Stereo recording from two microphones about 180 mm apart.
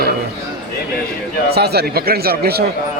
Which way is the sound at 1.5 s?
65° right (ahead or behind).